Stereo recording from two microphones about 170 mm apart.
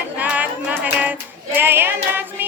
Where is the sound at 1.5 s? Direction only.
10° right (ahead or behind).